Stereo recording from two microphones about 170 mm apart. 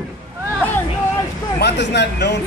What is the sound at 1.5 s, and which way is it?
Speech, 75° left (ahead or behind).